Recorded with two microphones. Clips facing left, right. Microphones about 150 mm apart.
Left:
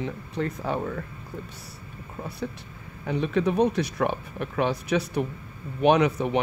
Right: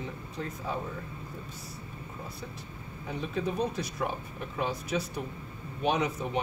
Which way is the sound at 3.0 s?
75° left (ahead or behind).